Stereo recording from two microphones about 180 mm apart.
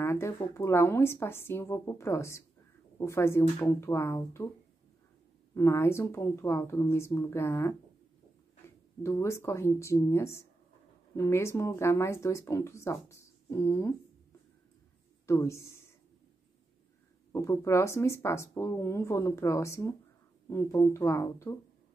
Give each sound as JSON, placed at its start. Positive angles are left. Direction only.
{"t": 0.0, "sound": "speech", "side_deg": 15}
{"t": 5.5, "sound": "speech", "side_deg": 15}
{"t": 15.2, "sound": "speech", "side_deg": 15}
{"t": 17.3, "sound": "speech", "side_deg": 15}